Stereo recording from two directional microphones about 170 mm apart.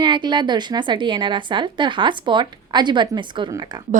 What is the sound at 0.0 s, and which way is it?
A woman's voice, 25° right (ahead or behind).